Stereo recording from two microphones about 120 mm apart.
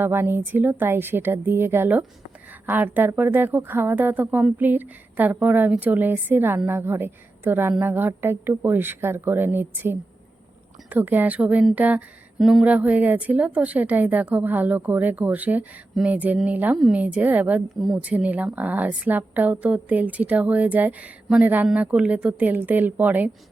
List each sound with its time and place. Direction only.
0.0 s a woman's voice: 20° right (ahead or behind)
12.4 s a sound: centre (ahead or behind)
12.6 s a woman's voice: 10° right (ahead or behind)